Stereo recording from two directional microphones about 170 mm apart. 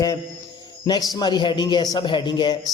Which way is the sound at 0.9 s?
20° left (ahead or behind).